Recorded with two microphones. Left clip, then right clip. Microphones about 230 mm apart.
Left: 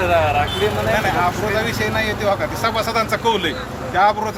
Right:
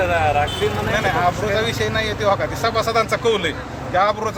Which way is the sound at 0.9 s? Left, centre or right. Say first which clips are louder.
Even; centre.